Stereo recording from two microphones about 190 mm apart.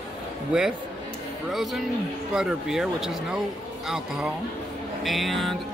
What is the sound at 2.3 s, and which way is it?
Speech, centre (ahead or behind).